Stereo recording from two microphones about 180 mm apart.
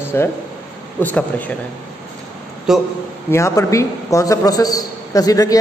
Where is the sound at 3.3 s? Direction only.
15° left (ahead or behind).